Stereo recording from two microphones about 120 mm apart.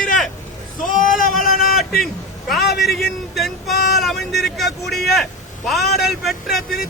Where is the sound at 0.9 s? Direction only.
90° left.